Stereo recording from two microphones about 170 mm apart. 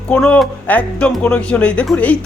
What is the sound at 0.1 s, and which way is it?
Speech, 5° left (ahead or behind).